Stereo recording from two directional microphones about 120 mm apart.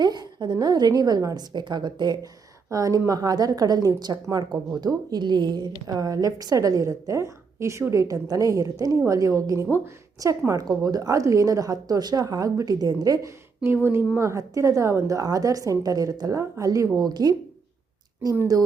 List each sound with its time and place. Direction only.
0.0 s a woman's voice: 35° right (ahead or behind)
13.7 s a woman's voice: 20° right (ahead or behind); by 17.3 s 35° right (ahead or behind)